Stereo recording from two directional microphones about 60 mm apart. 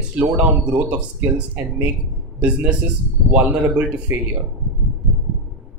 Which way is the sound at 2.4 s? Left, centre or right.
Centre.